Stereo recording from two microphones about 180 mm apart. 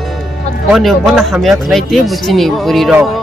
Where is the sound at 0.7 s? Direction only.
Centre (ahead or behind).